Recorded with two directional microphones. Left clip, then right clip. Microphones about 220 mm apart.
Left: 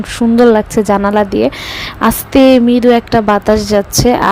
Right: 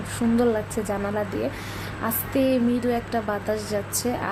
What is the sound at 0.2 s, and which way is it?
A woman's voice, 35° left (ahead or behind).